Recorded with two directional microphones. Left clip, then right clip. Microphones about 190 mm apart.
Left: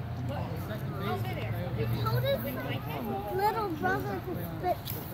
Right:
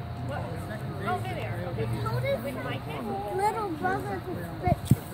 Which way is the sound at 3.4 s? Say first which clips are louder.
Right 1 dB; 20° right (ahead or behind).